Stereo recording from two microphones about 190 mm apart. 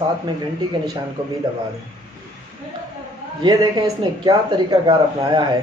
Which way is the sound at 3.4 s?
20° right (ahead or behind).